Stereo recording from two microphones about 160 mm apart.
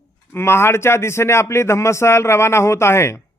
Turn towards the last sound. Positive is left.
turn(degrees=15)  # may be behind; listen again after turning